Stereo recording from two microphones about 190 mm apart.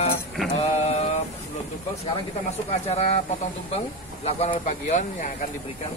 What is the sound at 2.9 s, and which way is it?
Speech, 35° left (ahead or behind).